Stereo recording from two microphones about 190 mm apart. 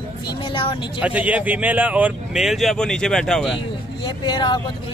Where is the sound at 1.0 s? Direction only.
5° right (ahead or behind).